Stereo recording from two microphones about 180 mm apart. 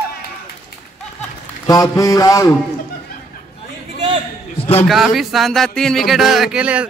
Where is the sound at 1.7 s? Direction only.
20° left (ahead or behind).